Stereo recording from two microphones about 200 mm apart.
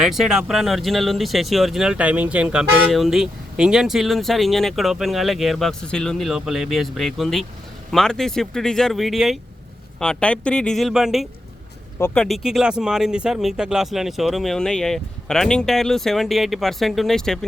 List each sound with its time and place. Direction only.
0.0 s speech: centre (ahead or behind)